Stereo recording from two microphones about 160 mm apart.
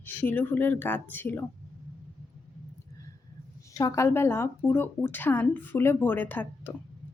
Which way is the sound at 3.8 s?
20° left (ahead or behind).